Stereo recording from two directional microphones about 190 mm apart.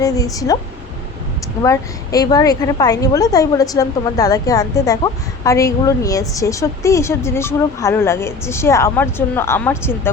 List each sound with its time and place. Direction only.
0.0 s a woman's voice: 20° left (ahead or behind)
1.6 s a woman's voice: 15° left (ahead or behind)